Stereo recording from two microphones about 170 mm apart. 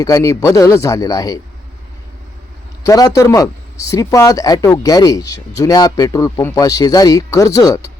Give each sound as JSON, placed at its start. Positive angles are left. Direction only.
{"t": 0.0, "sound": "speech", "side_deg": 20}
{"t": 2.8, "sound": "speech", "side_deg": 20}